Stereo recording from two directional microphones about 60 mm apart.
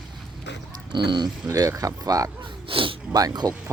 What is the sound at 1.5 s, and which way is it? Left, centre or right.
Speech, right.